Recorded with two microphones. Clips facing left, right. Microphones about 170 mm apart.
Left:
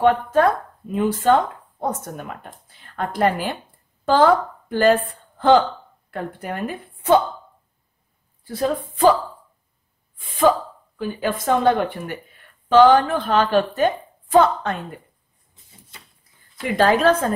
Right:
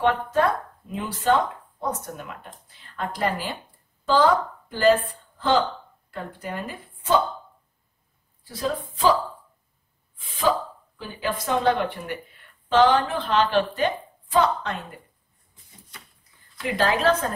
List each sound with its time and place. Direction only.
0.0 s a woman's voice: 50° left (ahead or behind)
8.5 s speech: 55° left (ahead or behind)
10.1 s speech: 50° left (ahead or behind)
16.5 s speech: 50° left (ahead or behind)